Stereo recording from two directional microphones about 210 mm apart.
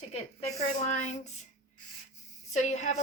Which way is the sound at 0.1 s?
30° left (ahead or behind).